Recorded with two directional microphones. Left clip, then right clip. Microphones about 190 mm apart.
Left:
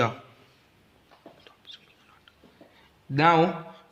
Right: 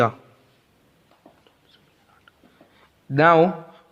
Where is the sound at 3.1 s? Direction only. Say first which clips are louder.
Right 5 dB; 50° right (ahead or behind).